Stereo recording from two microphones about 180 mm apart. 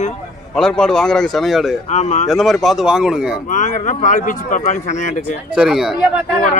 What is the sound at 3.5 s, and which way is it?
Speech, 45° left (ahead or behind).